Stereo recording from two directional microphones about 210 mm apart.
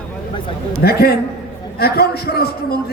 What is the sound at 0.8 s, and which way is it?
A man's voice, 45° left (ahead or behind).